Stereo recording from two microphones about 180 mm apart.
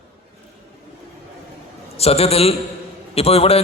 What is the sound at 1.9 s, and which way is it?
A man's voice, 35° left (ahead or behind).